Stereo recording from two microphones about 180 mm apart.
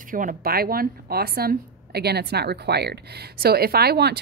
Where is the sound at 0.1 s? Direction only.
50° right (ahead or behind).